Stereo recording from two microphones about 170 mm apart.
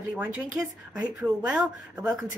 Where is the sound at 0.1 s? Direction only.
10° right (ahead or behind).